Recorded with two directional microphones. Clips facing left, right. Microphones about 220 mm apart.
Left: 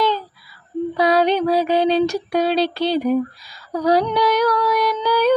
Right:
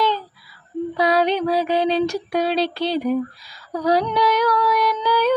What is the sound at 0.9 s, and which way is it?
Female singing, 40° left (ahead or behind).